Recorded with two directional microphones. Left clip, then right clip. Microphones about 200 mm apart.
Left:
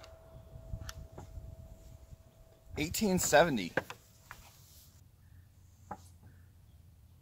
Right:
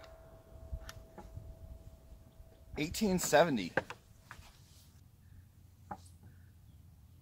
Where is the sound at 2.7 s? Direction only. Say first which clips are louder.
Left 2 dB; 45° left (ahead or behind).